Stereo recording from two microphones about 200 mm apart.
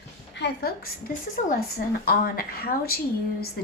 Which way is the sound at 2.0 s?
50° left (ahead or behind).